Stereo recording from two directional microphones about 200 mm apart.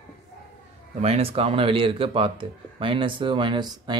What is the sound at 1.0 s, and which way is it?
Speech, 30° right (ahead or behind).